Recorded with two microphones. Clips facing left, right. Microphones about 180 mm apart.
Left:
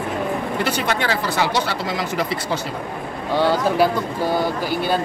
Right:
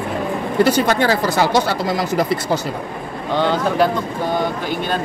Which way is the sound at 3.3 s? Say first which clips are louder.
Even; 10° left (ahead or behind).